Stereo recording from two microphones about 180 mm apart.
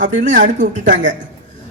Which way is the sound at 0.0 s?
45° right (ahead or behind).